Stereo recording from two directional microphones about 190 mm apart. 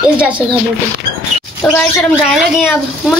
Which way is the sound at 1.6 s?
10° left (ahead or behind).